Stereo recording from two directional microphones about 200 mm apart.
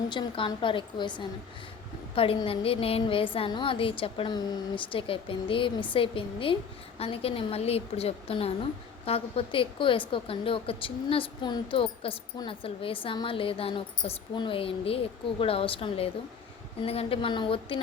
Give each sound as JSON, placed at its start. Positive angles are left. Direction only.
{"t": 0.1, "sound": "a woman's voice", "side_deg": 25}